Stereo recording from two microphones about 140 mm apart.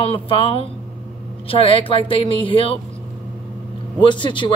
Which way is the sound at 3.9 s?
35° left (ahead or behind).